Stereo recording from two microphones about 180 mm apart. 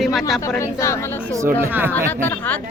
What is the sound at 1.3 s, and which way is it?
Speech, 15° right (ahead or behind).